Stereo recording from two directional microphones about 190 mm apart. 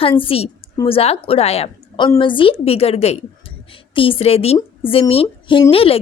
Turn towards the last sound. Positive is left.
turn(degrees=30)  # may be behind; listen again after turning